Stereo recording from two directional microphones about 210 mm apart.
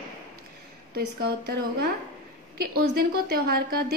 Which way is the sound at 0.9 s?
50° right (ahead or behind).